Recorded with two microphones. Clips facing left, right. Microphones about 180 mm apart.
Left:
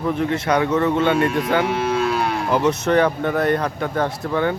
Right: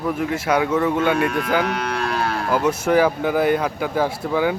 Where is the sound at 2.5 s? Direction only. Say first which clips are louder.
Even; 5° right (ahead or behind).